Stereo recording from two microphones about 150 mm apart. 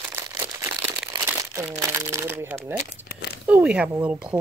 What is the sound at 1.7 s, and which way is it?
Speech, 20° right (ahead or behind).